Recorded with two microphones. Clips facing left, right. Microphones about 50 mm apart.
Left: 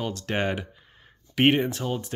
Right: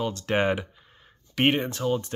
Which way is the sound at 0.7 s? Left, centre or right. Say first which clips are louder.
Even; centre.